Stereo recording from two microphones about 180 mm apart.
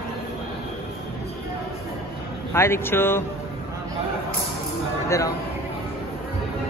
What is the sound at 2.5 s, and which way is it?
Speech, 15° left (ahead or behind).